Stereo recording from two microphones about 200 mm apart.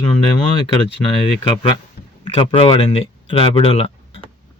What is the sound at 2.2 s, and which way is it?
Speech, 25° left (ahead or behind).